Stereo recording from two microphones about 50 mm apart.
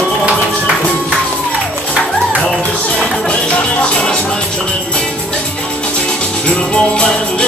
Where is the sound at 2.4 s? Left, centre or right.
Left.